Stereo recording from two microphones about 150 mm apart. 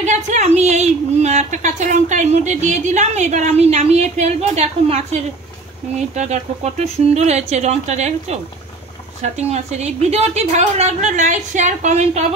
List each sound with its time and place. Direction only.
0.0 s a woman's voice: 50° right (ahead or behind)